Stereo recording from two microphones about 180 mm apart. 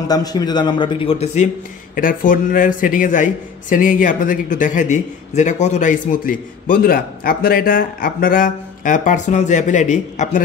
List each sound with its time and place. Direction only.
0.1 s a man's voice: 20° left (ahead or behind)
2.0 s speech: 50° left (ahead or behind)